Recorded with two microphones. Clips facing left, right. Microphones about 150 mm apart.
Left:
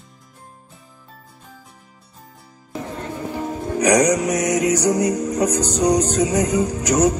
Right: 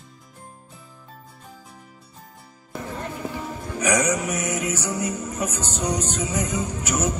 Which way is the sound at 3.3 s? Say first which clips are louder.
Left 7 dB; 35° left (ahead or behind).